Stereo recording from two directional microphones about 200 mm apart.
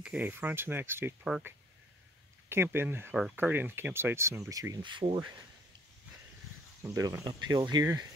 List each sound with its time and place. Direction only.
0.0 s speech: 5° right (ahead or behind)
2.5 s speech: 10° right (ahead or behind)
6.8 s speech: 15° right (ahead or behind)